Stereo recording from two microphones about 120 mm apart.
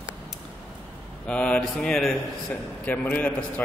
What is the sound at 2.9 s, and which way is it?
Speech, 10° left (ahead or behind).